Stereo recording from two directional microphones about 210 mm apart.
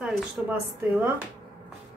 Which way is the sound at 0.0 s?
10° right (ahead or behind).